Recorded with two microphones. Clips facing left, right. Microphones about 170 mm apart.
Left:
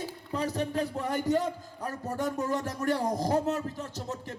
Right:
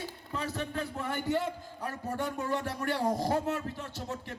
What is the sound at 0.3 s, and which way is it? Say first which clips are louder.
A man's voice: left 5 dB; 40° left (ahead or behind).